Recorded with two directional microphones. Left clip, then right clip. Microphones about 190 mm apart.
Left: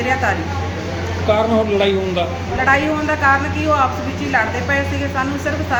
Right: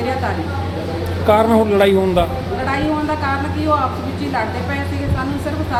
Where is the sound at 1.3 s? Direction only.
30° right (ahead or behind).